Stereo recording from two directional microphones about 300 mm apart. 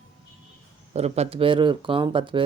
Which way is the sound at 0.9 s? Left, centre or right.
Right.